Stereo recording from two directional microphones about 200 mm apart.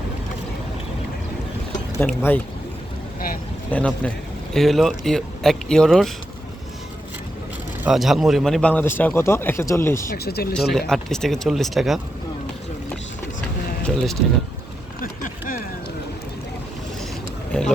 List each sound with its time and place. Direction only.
2.0 s a man's voice: 10° left (ahead or behind)
3.7 s a man's voice: 5° left (ahead or behind)
7.9 s a man's voice: centre (ahead or behind)
10.1 s speech: 50° left (ahead or behind)
10.5 s speech: centre (ahead or behind)
13.8 s speech: centre (ahead or behind)
15.0 s a sound: 45° left (ahead or behind)
17.5 s a sound: 5° left (ahead or behind)